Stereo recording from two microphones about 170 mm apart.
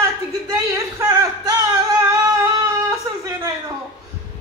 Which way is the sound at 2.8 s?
20° right (ahead or behind).